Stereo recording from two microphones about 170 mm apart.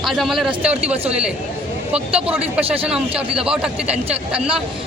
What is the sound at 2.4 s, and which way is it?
Speech, 35° right (ahead or behind).